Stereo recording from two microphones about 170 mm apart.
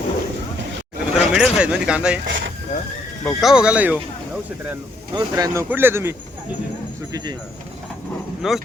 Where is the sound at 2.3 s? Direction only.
90° right.